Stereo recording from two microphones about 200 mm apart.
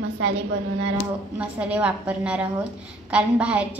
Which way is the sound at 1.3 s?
5° right (ahead or behind).